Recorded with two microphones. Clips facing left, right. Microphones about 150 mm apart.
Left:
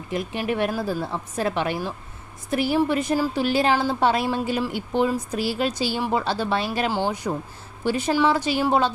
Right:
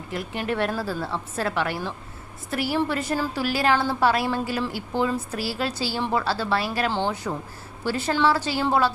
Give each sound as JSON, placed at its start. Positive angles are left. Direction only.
{"t": 0.1, "sound": "a woman's voice", "side_deg": 15}